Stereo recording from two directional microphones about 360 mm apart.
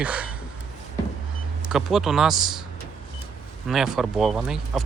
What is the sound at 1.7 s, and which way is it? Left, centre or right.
Speech, centre.